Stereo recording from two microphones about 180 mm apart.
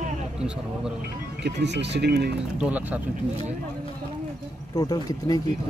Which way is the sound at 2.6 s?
10° right (ahead or behind).